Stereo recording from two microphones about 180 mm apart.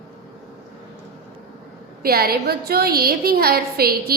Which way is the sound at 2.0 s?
60° right (ahead or behind).